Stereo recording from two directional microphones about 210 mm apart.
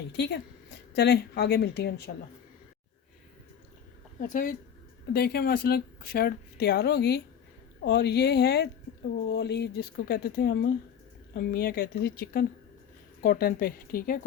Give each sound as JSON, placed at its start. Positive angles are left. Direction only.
{"t": 0.1, "sound": "a woman's voice", "side_deg": 55}
{"t": 4.3, "sound": "speech", "side_deg": 40}